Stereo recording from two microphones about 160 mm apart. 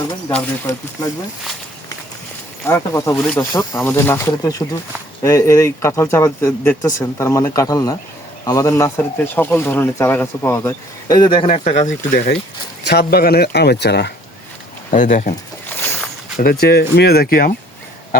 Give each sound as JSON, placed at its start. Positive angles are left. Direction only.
{"t": 0.3, "sound": "speech", "side_deg": 10}
{"t": 2.6, "sound": "speech", "side_deg": 15}
{"t": 12.1, "sound": "speech", "side_deg": 90}
{"t": 12.8, "sound": "speech", "side_deg": 80}
{"t": 14.8, "sound": "speech", "side_deg": 50}
{"t": 15.6, "sound": "boat", "side_deg": 10}
{"t": 16.4, "sound": "speech", "side_deg": 75}